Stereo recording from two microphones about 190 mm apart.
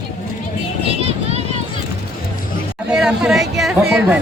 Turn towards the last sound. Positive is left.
turn(degrees=-5)  # may be behind; listen again after turning